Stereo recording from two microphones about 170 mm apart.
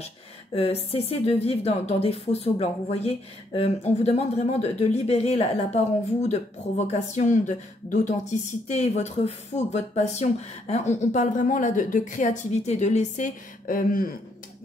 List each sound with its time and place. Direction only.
0.6 s a woman's voice: 35° left (ahead or behind); by 14.1 s 55° left (ahead or behind)